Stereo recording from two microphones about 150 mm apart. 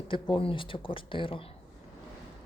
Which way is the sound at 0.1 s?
35° left (ahead or behind).